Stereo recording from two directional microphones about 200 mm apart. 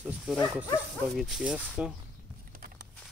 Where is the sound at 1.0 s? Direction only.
Centre (ahead or behind).